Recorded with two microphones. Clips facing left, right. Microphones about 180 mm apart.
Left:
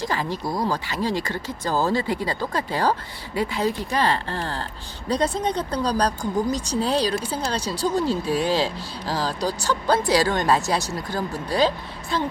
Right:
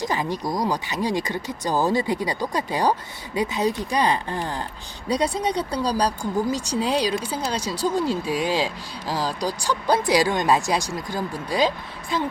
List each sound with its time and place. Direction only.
0.0 s speech: 20° right (ahead or behind)